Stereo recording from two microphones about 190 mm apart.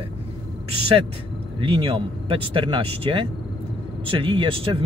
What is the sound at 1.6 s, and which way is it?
Speech, 25° right (ahead or behind).